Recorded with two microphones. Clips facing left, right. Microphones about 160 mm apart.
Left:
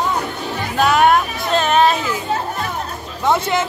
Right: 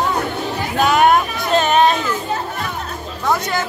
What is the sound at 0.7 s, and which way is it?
Chatter, centre (ahead or behind).